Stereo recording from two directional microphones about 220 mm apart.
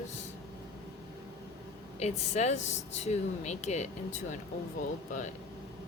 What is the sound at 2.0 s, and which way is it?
Speech, 30° left (ahead or behind).